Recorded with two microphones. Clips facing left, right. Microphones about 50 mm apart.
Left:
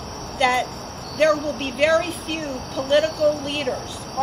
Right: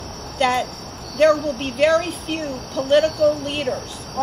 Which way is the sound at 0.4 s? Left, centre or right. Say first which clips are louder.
Even; centre.